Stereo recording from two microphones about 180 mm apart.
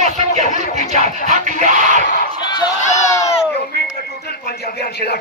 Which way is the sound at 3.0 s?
15° left (ahead or behind).